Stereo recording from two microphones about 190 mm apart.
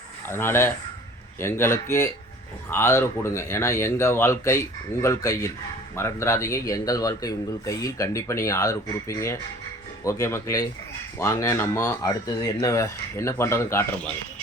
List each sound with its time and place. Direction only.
0.3 s speech: 10° left (ahead or behind)